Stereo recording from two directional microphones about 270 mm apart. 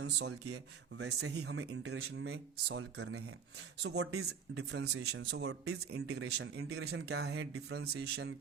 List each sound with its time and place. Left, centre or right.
0.0 s speech: right
1.0 s speech: right
1.5 s speech: right
2.0 s speech: right
4.3 s speech: right
6.0 s speech: right